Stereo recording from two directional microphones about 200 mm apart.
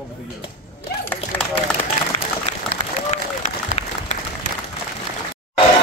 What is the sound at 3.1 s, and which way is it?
Applause, 35° left (ahead or behind).